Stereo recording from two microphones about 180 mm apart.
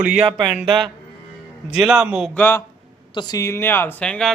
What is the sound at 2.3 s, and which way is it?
A man's voice, 10° left (ahead or behind).